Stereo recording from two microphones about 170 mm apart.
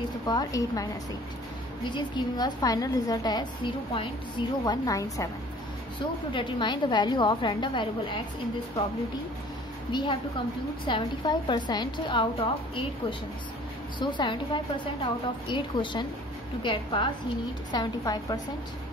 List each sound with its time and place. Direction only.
0.3 s a woman's voice: 20° left (ahead or behind)
1.9 s a woman's voice: 25° left (ahead or behind)
6.3 s a woman's voice: 25° left (ahead or behind)
9.9 s a woman's voice: 25° left (ahead or behind)
13.9 s a woman's voice: 30° left (ahead or behind)